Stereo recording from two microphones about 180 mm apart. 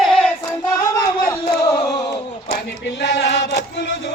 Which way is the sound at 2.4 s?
65° left (ahead or behind).